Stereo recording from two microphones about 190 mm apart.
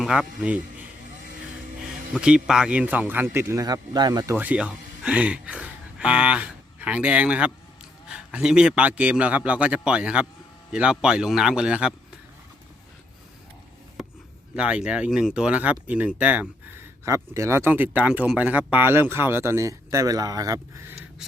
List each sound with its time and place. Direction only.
0.0 s a man's voice: centre (ahead or behind)
2.1 s a man's voice: 5° right (ahead or behind); by 4.4 s 20° right (ahead or behind)
4.4 s a man's voice: 5° right (ahead or behind)
14.5 s speech: 5° right (ahead or behind)